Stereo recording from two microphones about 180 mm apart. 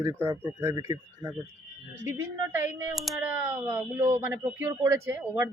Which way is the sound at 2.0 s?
15° right (ahead or behind).